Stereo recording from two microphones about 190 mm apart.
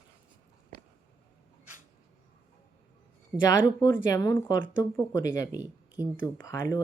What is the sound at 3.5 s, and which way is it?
Speech, 20° left (ahead or behind).